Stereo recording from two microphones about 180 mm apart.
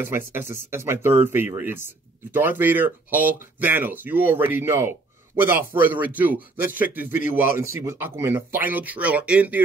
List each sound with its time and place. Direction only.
0.0 s speech: 10° right (ahead or behind)